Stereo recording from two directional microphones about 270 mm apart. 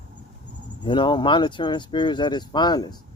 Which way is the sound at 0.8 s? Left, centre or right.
Centre.